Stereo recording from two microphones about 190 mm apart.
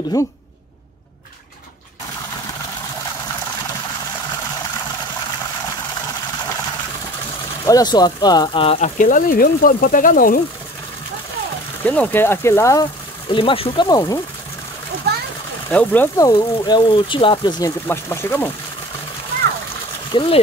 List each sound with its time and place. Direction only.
0.1 s speech: 20° left (ahead or behind)
7.6 s speech: 20° left (ahead or behind); by 10.4 s 45° left (ahead or behind)
11.8 s speech: 10° left (ahead or behind)
13.3 s speech: 25° left (ahead or behind)
15.7 s speech: 10° left (ahead or behind)
20.1 s speech: 25° left (ahead or behind)